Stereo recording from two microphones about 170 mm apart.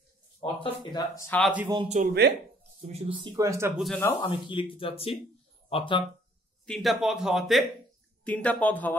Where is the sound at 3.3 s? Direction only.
20° right (ahead or behind).